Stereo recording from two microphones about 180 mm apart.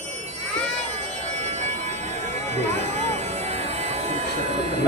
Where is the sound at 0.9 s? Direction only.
40° right (ahead or behind).